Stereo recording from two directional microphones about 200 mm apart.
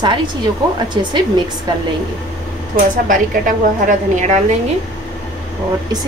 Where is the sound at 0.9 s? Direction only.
20° right (ahead or behind).